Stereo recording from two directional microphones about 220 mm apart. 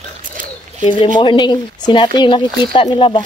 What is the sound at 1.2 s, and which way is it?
Speech, 20° left (ahead or behind).